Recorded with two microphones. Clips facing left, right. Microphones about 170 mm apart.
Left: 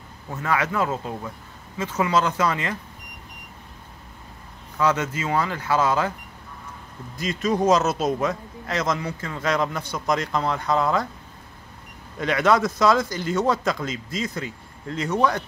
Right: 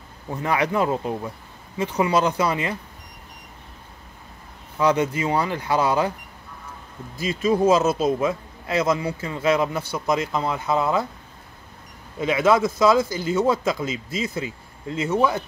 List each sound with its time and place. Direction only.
0.3 s a man's voice: 15° right (ahead or behind)
4.7 s a man's voice: 15° right (ahead or behind)
7.2 s a man's voice: 5° right (ahead or behind)
12.2 s speech: 5° right (ahead or behind)